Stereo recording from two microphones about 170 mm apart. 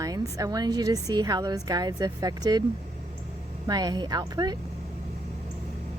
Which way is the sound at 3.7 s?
25° right (ahead or behind).